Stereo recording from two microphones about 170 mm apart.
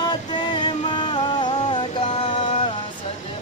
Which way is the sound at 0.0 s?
25° left (ahead or behind).